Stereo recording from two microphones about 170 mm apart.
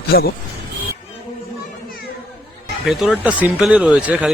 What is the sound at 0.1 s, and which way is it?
Speech, 65° left (ahead or behind).